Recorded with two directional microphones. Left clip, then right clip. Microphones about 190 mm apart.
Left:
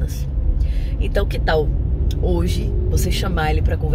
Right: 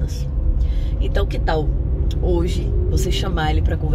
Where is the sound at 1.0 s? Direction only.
10° left (ahead or behind).